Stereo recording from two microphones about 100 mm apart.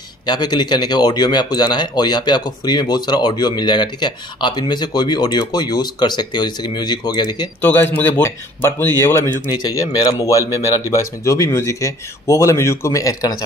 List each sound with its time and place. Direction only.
0.3 s speech: 45° left (ahead or behind)
7.6 s speech: 20° left (ahead or behind)
9.6 s speech: 40° left (ahead or behind)